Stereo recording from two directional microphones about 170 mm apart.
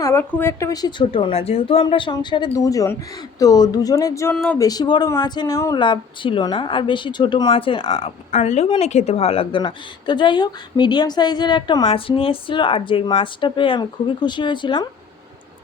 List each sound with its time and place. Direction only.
0.0 s a woman's voice: 15° left (ahead or behind)